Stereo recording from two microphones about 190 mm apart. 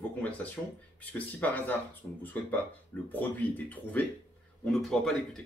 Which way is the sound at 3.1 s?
10° left (ahead or behind).